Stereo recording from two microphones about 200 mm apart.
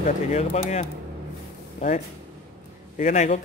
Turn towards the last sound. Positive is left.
turn(degrees=35)  # may be behind; listen again after turning